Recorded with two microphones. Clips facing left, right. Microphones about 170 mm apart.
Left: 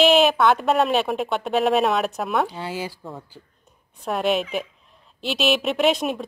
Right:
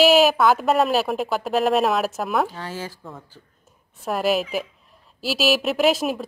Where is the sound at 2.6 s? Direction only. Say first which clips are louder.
Left 2 dB; 15° left (ahead or behind).